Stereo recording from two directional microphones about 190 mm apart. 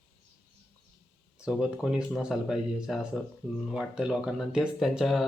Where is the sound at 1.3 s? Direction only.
5° right (ahead or behind).